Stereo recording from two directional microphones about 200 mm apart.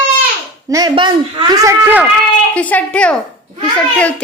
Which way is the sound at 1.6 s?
10° right (ahead or behind).